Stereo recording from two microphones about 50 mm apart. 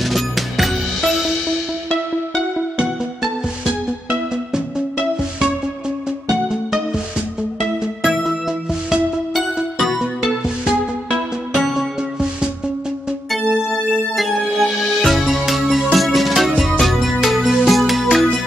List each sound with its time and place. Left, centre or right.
0.0 s music: centre
2.8 s music: centre
7.2 s music: centre
13.3 s music: centre